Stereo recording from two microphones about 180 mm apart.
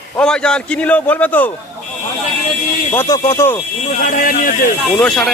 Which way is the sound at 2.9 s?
20° left (ahead or behind).